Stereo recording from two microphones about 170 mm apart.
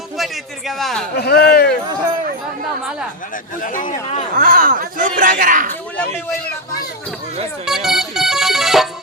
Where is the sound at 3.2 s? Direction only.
50° left (ahead or behind).